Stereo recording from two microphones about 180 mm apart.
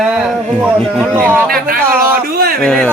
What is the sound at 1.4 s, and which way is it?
Speech, 55° right (ahead or behind).